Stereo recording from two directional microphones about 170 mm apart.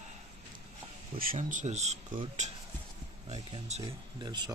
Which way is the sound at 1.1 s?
45° right (ahead or behind).